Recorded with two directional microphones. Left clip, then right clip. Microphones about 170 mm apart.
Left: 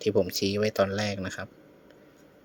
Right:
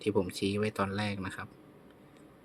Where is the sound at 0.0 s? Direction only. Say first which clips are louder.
Left 6 dB; 20° left (ahead or behind).